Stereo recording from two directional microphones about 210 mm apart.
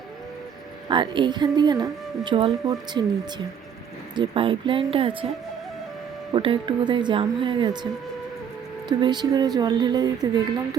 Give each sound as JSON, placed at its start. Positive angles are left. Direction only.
{"t": 0.9, "sound": "a woman's voice", "side_deg": -20}
{"t": 6.3, "sound": "a woman's voice", "side_deg": -25}
{"t": 8.9, "sound": "a woman's voice", "side_deg": -20}